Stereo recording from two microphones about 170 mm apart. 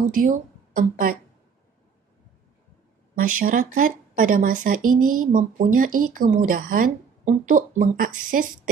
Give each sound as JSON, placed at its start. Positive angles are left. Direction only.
{"t": 0.1, "sound": "speech", "side_deg": -55}
{"t": 3.2, "sound": "speech", "side_deg": -55}